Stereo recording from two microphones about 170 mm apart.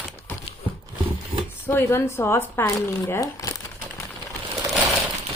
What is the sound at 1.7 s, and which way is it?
Speech, 15° left (ahead or behind).